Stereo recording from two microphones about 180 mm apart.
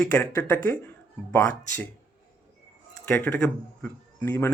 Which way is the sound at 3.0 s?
10° left (ahead or behind).